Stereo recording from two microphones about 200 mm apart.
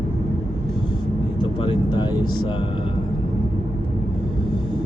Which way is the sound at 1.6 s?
25° left (ahead or behind).